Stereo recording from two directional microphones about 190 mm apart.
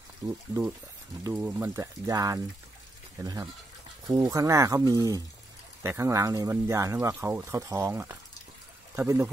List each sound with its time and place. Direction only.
0.5 s speech: 10° right (ahead or behind)
4.1 s speech: 15° right (ahead or behind)